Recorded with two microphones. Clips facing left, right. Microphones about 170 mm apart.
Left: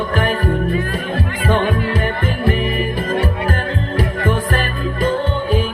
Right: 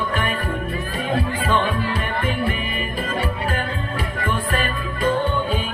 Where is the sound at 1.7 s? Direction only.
45° left (ahead or behind).